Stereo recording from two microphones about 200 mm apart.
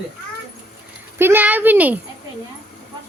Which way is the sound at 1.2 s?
10° right (ahead or behind).